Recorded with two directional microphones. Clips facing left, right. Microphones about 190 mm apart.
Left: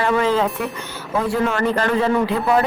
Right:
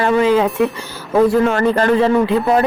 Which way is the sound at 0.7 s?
35° right (ahead or behind).